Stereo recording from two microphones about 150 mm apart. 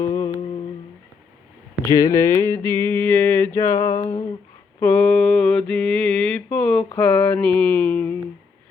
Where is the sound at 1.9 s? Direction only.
20° left (ahead or behind).